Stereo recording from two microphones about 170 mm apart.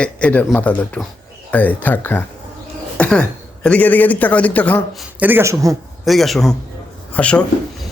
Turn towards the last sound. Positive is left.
turn(degrees=5)  # may be behind; listen again after turning